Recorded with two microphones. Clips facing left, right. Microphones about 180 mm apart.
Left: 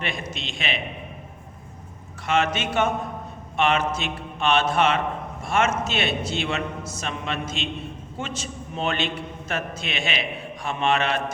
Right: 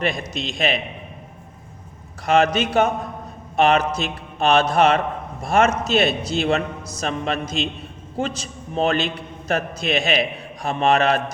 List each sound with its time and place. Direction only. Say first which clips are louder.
0.0 s a man's voice: right 6 dB; 40° right (ahead or behind)
2.2 s a man's voice: right 6 dB; 40° right (ahead or behind)